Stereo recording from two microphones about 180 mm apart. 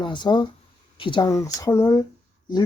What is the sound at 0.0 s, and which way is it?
Speech, 25° left (ahead or behind).